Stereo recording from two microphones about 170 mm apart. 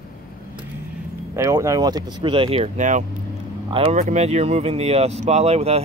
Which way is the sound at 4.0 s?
45° right (ahead or behind).